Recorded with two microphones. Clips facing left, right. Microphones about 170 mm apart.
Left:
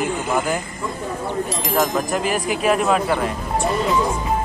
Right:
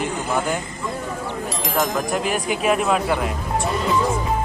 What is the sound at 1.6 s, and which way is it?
Speech, centre (ahead or behind).